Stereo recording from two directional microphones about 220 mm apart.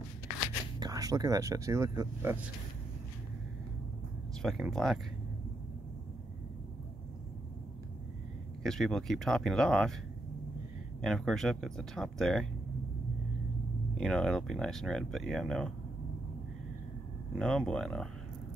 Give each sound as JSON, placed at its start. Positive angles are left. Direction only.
{"t": 0.7, "sound": "speech", "side_deg": -15}
{"t": 4.4, "sound": "speech", "side_deg": 0}
{"t": 8.6, "sound": "speech", "side_deg": 0}
{"t": 11.0, "sound": "speech", "side_deg": 0}
{"t": 13.9, "sound": "speech", "side_deg": 0}
{"t": 17.4, "sound": "speech", "side_deg": 0}